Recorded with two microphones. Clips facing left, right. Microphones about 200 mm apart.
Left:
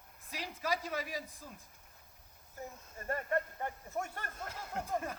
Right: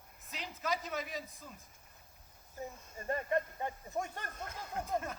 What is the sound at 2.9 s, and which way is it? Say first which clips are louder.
Speech: right 1 dB; 20° right (ahead or behind).